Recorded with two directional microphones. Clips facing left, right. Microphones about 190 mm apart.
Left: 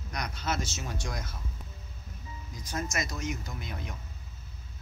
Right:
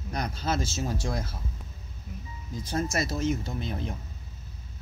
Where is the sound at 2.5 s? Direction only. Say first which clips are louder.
Right 6 dB; 30° right (ahead or behind).